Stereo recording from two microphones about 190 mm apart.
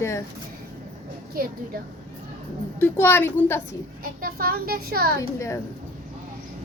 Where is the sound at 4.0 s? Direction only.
50° right (ahead or behind).